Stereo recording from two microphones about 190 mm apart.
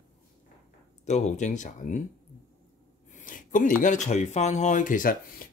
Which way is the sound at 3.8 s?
40° left (ahead or behind).